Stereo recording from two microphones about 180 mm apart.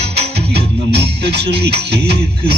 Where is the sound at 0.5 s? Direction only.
65° right (ahead or behind).